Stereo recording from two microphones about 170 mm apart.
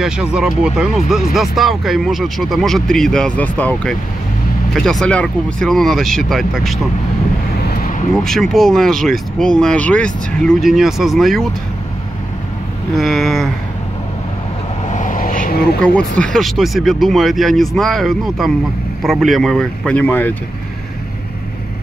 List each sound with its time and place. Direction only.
0.0 s speech: 5° right (ahead or behind)
8.2 s speech: centre (ahead or behind)
12.9 s speech: centre (ahead or behind)
14.9 s vehicle: 45° left (ahead or behind)
15.8 s speech: 5° left (ahead or behind)